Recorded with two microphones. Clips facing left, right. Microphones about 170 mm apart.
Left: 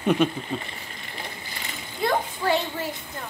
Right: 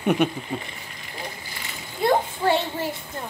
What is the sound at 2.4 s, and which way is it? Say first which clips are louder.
Child singing: right 2 dB; 25° right (ahead or behind).